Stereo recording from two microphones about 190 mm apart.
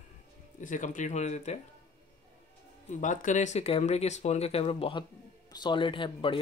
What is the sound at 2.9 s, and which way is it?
Speech, 40° left (ahead or behind).